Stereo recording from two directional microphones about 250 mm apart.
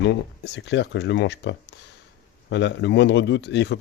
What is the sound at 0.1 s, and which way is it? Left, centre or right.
Speech, left.